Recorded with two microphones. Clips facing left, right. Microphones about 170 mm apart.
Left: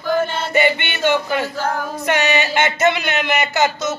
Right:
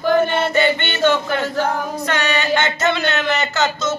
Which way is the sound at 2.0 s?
15° left (ahead or behind).